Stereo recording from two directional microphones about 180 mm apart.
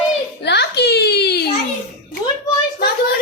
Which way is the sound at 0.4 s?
65° left (ahead or behind).